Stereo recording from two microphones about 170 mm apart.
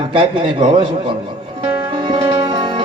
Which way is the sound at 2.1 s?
30° right (ahead or behind).